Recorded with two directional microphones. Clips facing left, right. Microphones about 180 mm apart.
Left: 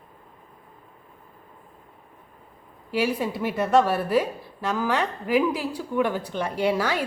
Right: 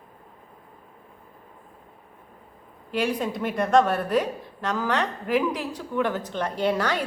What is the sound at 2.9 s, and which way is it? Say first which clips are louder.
A woman's voice: left 1 dB; 5° left (ahead or behind).